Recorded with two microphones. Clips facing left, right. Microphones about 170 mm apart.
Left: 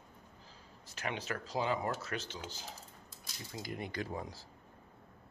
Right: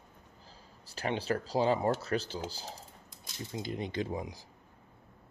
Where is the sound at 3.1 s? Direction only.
20° right (ahead or behind).